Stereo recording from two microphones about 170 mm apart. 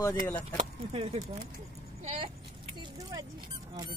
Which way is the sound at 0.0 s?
20° left (ahead or behind).